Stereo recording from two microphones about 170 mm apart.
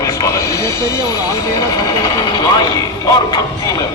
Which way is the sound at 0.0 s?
20° left (ahead or behind).